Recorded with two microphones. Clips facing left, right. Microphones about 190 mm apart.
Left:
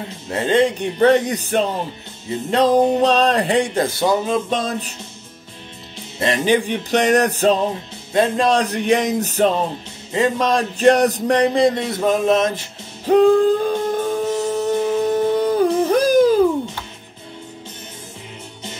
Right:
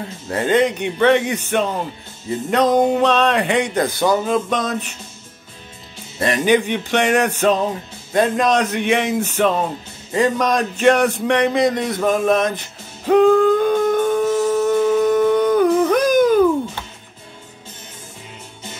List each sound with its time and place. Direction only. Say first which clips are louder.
0.3 s speech: even; 25° left (ahead or behind)
4.0 s music: right 2 dB; 20° left (ahead or behind)
6.1 s speech: right 1 dB; 25° left (ahead or behind)
10.1 s a sound: even; 25° left (ahead or behind)